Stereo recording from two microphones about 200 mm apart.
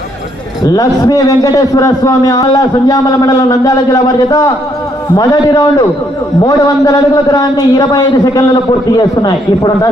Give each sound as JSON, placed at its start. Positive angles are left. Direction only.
{"t": 0.6, "sound": "a man's voice", "side_deg": 20}